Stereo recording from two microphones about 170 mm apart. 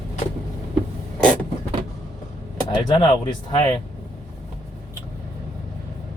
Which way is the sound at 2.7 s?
25° left (ahead or behind).